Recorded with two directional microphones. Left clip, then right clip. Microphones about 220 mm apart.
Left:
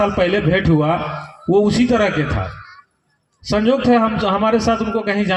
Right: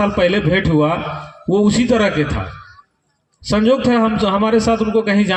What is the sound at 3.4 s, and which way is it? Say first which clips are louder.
A man's voice: right 1 dB; 40° right (ahead or behind).